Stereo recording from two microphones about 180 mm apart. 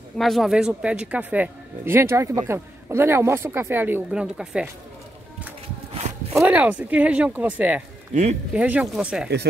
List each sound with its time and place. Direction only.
0.2 s speech: centre (ahead or behind)
6.3 s speech: 10° right (ahead or behind)
8.1 s speech: 40° right (ahead or behind)
8.5 s speech: 5° right (ahead or behind)